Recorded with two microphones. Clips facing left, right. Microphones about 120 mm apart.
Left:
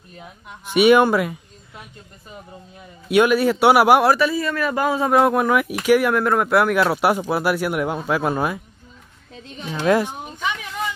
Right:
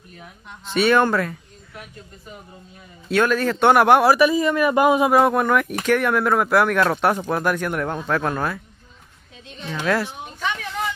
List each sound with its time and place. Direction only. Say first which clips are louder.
0.7 s speech: left 4 dB; 15° left (ahead or behind)
3.1 s speech: left 3 dB; 15° left (ahead or behind)
4.1 s speech: right 3 dB; 15° right (ahead or behind)
5.1 s speech: even; centre (ahead or behind)
9.7 s speech: left 4 dB; 15° left (ahead or behind)